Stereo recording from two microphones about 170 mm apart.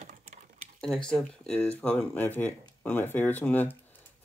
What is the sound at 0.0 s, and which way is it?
Typing, 45° right (ahead or behind).